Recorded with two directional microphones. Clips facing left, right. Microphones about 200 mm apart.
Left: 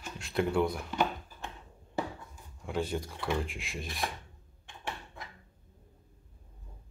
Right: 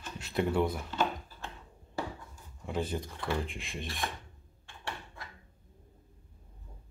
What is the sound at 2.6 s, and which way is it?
Speech, centre (ahead or behind).